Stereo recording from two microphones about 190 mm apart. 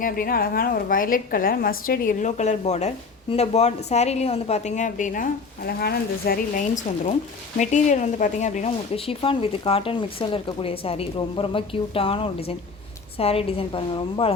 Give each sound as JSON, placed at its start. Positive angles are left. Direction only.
{"t": 0.0, "sound": "a woman's voice", "side_deg": 50}